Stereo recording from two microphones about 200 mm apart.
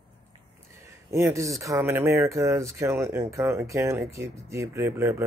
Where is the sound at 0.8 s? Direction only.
15° right (ahead or behind).